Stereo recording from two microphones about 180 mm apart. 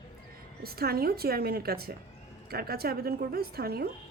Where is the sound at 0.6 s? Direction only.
60° right (ahead or behind).